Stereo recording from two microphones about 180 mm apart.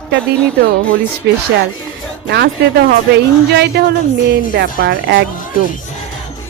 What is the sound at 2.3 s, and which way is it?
Speech, 65° right (ahead or behind).